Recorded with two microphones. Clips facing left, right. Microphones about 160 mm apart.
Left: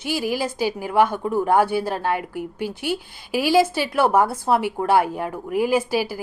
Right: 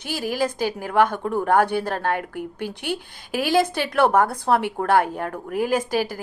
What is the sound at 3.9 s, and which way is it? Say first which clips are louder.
A woman's voice: even; 5° left (ahead or behind).